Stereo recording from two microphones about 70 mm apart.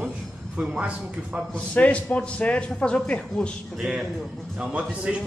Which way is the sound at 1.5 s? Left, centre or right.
Centre.